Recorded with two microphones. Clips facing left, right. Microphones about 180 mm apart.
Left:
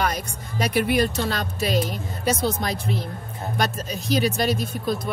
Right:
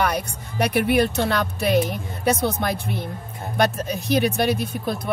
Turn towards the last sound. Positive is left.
turn(degrees=-60)  # may be behind; listen again after turning